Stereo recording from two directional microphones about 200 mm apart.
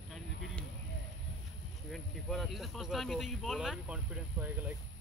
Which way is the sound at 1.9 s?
Centre (ahead or behind).